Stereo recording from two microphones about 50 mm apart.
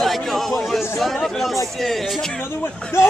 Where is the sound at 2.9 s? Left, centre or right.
Left.